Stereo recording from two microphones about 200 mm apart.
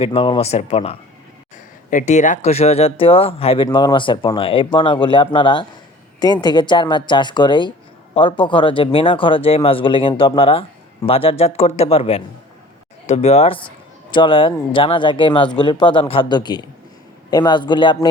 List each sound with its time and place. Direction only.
0.0 s speech: 30° left (ahead or behind)